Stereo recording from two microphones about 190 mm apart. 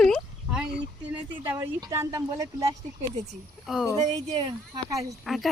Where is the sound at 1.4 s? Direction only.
20° right (ahead or behind).